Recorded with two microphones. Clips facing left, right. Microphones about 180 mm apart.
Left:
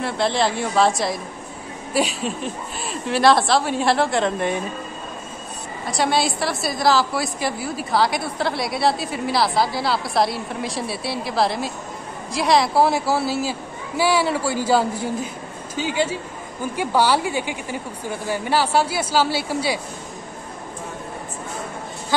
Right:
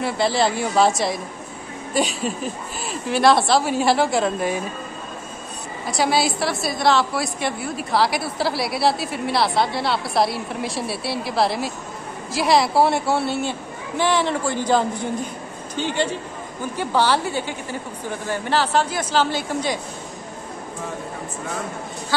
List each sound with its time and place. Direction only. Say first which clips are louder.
0.0 s a woman's voice: right 1 dB; centre (ahead or behind)
5.9 s a woman's voice: even; centre (ahead or behind)